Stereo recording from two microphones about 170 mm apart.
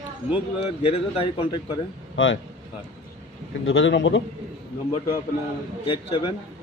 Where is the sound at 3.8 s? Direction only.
90° left.